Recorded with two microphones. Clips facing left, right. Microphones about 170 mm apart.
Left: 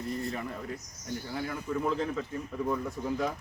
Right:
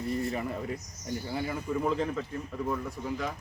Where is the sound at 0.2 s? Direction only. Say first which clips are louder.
Right 3 dB; centre (ahead or behind).